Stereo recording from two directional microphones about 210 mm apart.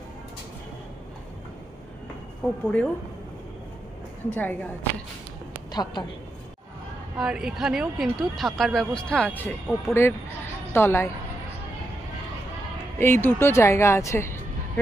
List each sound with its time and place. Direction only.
2.4 s speech: 5° left (ahead or behind)
4.3 s a woman's voice: 10° left (ahead or behind)
5.7 s a woman's voice: 20° left (ahead or behind)
7.2 s a woman's voice: 5° right (ahead or behind)
13.0 s a woman's voice: 10° left (ahead or behind)